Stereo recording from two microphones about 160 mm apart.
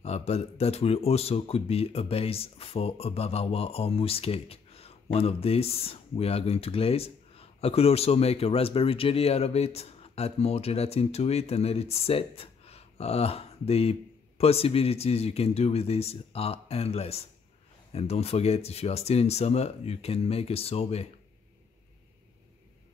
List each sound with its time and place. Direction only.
0.0 s speech: 40° left (ahead or behind)